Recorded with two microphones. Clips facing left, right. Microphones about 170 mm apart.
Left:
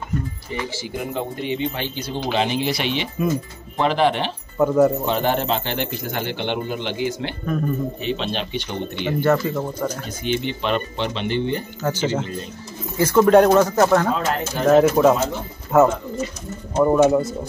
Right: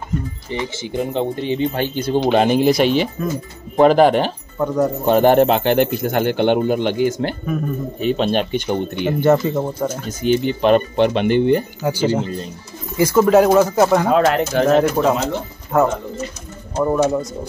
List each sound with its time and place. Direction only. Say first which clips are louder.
0.5 s speech: right 7 dB; 25° right (ahead or behind)
1.7 s speech: right 8 dB; 50° right (ahead or behind)
4.6 s speech: left 3 dB; 5° left (ahead or behind)
5.0 s speech: right 9 dB; 50° right (ahead or behind)
7.4 s speech: right 1 dB; 5° right (ahead or behind)
8.0 s speech: right 7 dB; 45° right (ahead or behind)
8.9 s speech: right 3 dB; 15° right (ahead or behind)
10.0 s speech: right 6 dB; 45° right (ahead or behind)
11.8 s speech: right 4 dB; 10° right (ahead or behind)
14.1 s speech: right 8 dB; 80° right
14.7 s speech: left 4 dB; 5° left (ahead or behind)